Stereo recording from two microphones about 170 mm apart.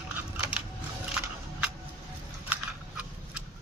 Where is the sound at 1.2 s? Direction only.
10° right (ahead or behind).